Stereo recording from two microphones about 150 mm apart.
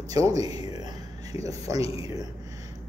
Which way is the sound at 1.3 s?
20° right (ahead or behind).